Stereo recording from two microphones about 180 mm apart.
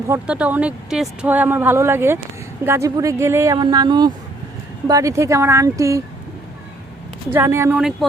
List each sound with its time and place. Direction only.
0.1 s speech: 5° right (ahead or behind)
7.3 s speech: 15° right (ahead or behind)